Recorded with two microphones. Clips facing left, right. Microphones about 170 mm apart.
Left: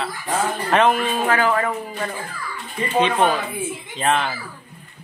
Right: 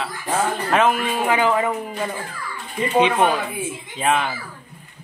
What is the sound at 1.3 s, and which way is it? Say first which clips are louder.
A man's voice: right 2 dB; 20° right (ahead or behind).